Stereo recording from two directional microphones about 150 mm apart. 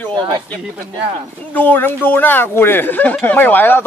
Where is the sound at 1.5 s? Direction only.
10° left (ahead or behind).